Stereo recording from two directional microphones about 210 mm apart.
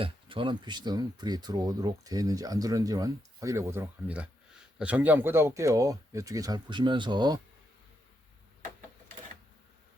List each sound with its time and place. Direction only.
0.0 s speech: 25° right (ahead or behind)